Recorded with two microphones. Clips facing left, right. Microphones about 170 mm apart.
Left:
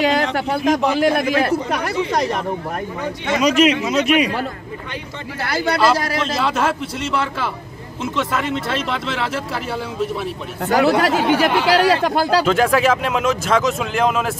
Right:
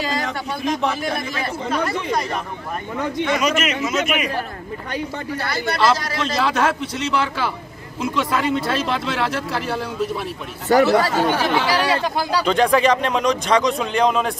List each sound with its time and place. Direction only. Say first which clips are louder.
0.0 s speech: left 7 dB; 80° left
3.3 s a man's voice: left 6 dB; 35° left (ahead or behind)
5.8 s speech: left 1 dB; 5° left (ahead or behind)
10.8 s speech: left 1 dB; 70° left (ahead or behind)
12.4 s speech: even; 5° left (ahead or behind)